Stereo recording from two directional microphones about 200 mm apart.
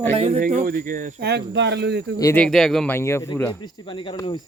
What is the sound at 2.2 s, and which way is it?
Speech, 15° left (ahead or behind).